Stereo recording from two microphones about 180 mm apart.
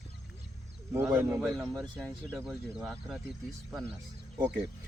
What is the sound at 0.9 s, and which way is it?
Speech, 15° right (ahead or behind).